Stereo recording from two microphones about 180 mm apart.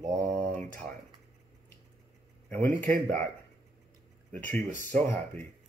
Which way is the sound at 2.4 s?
10° left (ahead or behind).